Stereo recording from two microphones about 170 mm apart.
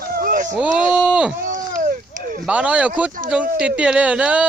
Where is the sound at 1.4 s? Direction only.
50° right (ahead or behind).